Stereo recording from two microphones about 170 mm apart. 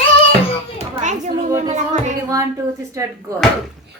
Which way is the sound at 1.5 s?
45° right (ahead or behind).